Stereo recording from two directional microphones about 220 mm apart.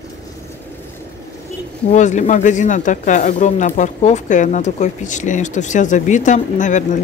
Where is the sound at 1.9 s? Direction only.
35° left (ahead or behind).